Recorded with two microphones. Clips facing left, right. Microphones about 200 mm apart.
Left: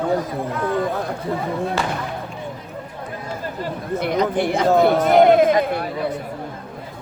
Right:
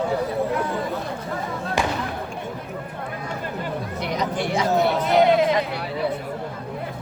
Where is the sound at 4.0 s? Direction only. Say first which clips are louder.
Left 7 dB; 55° left (ahead or behind).